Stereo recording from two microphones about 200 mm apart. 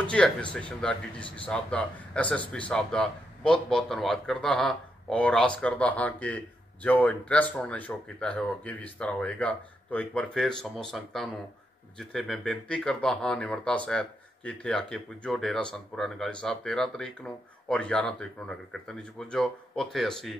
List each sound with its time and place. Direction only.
0.0 s speech: 5° left (ahead or behind)